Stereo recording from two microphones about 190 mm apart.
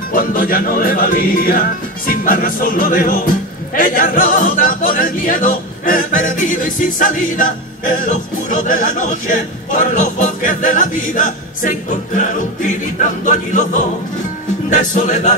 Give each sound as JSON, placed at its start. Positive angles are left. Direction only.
{"t": 0.1, "sound": "music", "side_deg": 45}